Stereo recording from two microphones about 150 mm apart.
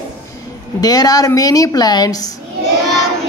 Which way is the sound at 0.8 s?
25° left (ahead or behind).